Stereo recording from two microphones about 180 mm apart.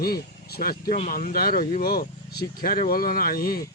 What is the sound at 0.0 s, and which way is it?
Speech, 60° left (ahead or behind).